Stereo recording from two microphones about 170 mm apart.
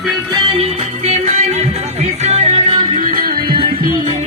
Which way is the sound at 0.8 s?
40° right (ahead or behind).